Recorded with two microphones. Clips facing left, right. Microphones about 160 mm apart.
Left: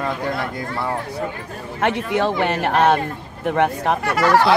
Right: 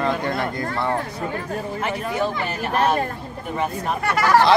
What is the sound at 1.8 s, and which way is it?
Speech, 80° left.